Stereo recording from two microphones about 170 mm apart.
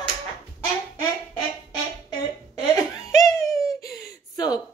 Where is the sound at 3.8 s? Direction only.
20° left (ahead or behind).